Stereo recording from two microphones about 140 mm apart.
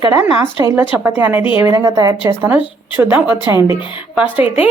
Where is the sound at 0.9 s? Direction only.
15° right (ahead or behind).